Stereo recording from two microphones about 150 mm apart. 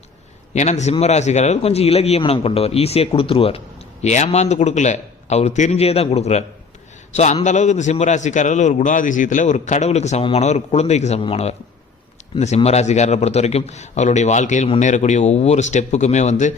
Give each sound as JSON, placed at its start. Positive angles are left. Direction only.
{"t": 0.5, "sound": "a man's voice", "side_deg": 50}
{"t": 4.0, "sound": "a man's voice", "side_deg": 50}
{"t": 7.4, "sound": "a man's voice", "side_deg": 50}
{"t": 12.5, "sound": "a man's voice", "side_deg": 45}